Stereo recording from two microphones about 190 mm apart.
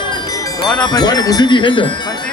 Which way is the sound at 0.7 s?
20° left (ahead or behind).